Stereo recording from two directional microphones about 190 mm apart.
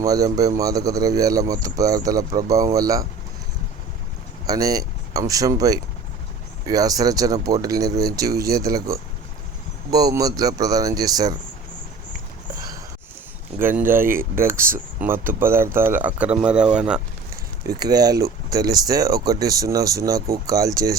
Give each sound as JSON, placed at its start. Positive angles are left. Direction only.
{"t": 0.0, "sound": "speech", "side_deg": -20}
{"t": 4.4, "sound": "speech", "side_deg": -20}
{"t": 13.6, "sound": "speech", "side_deg": -10}
{"t": 17.7, "sound": "speech", "side_deg": -20}